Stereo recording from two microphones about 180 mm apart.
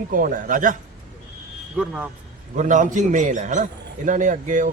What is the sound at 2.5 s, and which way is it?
A man's voice, 45° right (ahead or behind).